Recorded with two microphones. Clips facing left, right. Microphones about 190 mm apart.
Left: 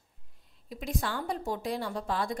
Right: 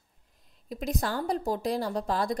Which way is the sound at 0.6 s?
40° right (ahead or behind).